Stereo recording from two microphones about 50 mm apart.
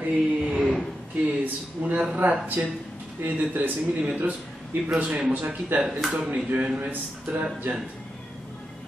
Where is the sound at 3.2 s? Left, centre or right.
Right.